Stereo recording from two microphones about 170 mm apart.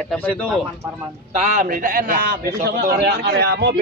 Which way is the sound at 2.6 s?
70° right (ahead or behind).